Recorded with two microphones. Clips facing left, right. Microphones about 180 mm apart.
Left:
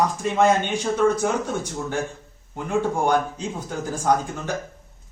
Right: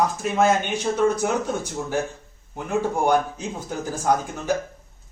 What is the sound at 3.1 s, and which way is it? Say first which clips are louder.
Speech: right 1 dB; 10° right (ahead or behind).